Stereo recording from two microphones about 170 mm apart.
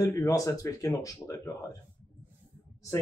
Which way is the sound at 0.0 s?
20° left (ahead or behind).